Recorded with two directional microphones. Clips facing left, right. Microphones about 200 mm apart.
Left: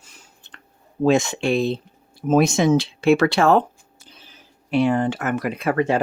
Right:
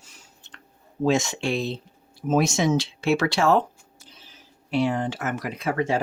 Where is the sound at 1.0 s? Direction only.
55° left (ahead or behind).